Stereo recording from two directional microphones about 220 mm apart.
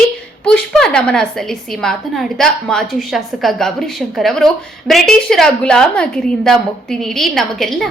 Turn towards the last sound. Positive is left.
turn(degrees=0)  # may be behind; listen again after turning